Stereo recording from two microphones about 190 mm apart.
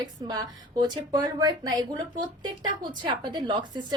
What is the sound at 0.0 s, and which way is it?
A woman's voice, 20° right (ahead or behind).